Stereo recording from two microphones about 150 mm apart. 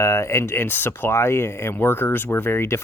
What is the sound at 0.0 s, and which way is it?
Speech, 20° left (ahead or behind).